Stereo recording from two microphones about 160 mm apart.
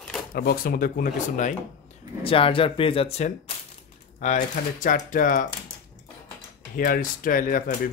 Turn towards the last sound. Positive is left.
turn(degrees=60)  # may be behind; listen again after turning